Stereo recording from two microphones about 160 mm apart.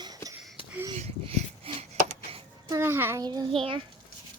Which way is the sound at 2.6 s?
20° right (ahead or behind).